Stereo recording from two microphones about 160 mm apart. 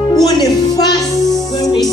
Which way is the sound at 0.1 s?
25° left (ahead or behind).